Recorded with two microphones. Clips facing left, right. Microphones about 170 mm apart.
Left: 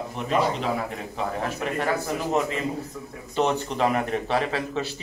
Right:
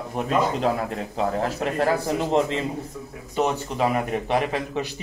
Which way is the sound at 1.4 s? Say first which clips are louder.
Right 4 dB; 35° right (ahead or behind).